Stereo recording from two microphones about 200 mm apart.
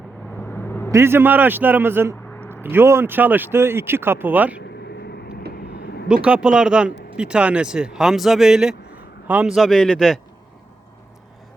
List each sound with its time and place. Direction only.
0.3 s vehicle: 10° left (ahead or behind)
0.9 s speech: 15° right (ahead or behind)
5.5 s vehicle: 50° left (ahead or behind)
6.2 s speech: 5° right (ahead or behind)